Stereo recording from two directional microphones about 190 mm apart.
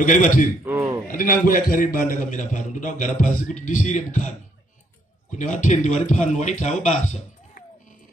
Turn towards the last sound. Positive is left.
turn(degrees=40)  # may be behind; listen again after turning